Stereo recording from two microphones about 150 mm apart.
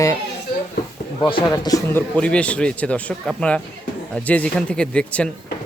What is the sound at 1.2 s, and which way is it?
Speech, 30° left (ahead or behind).